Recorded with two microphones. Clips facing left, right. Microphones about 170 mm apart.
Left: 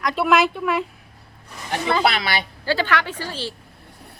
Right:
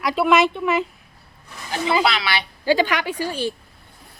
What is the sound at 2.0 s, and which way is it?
Speech, 50° left (ahead or behind).